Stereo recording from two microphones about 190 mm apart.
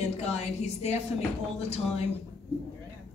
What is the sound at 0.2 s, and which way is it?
A woman's voice, 35° left (ahead or behind).